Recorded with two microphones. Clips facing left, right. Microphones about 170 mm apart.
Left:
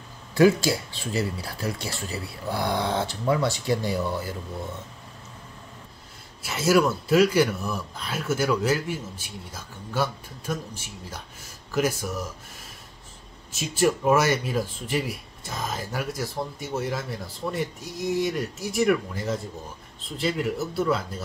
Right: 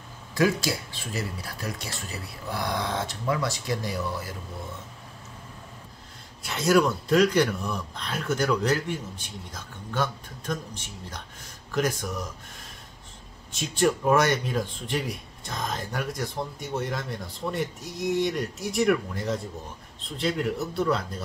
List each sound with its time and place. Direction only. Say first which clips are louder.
0.3 s speech: left 5 dB; 30° left (ahead or behind)
6.4 s speech: left 1 dB; 5° left (ahead or behind)
13.5 s speech: left 1 dB; 5° left (ahead or behind)